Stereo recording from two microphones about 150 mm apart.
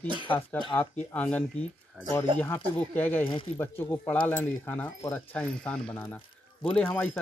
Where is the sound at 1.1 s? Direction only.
10° left (ahead or behind).